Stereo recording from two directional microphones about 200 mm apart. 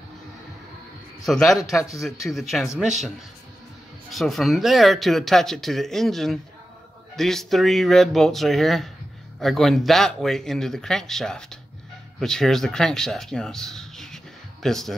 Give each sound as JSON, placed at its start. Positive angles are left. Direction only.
{"t": 1.2, "sound": "speech", "side_deg": 0}
{"t": 1.8, "sound": "a man's voice", "side_deg": 15}
{"t": 2.2, "sound": "speech", "side_deg": 0}
{"t": 4.1, "sound": "speech", "side_deg": 0}